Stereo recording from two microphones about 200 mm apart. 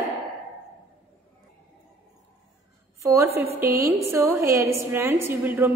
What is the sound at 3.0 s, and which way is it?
A woman's voice, 15° right (ahead or behind).